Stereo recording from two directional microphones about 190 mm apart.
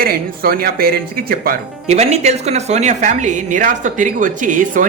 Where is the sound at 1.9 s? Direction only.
35° right (ahead or behind).